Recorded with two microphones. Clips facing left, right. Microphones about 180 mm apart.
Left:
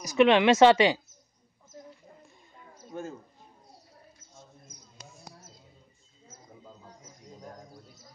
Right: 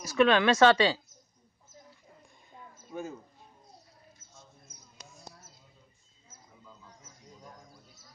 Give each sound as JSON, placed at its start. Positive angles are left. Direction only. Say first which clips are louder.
{"t": 0.0, "sound": "speech", "louder": "left 3 dB", "side_deg": 20}
{"t": 2.9, "sound": "speech", "louder": "left 1 dB", "side_deg": 0}
{"t": 7.4, "sound": "bird", "louder": "left 7 dB", "side_deg": 40}